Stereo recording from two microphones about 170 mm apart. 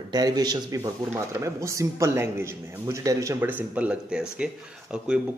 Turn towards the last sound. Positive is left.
turn(degrees=-5)  # may be behind; listen again after turning